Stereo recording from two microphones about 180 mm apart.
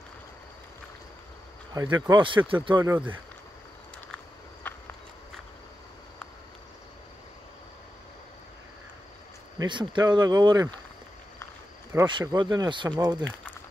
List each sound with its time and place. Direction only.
1.7 s speech: 20° right (ahead or behind)
4.6 s clip-clop: 10° left (ahead or behind)
9.6 s speech: 25° right (ahead or behind)
12.1 s speech: 25° right (ahead or behind)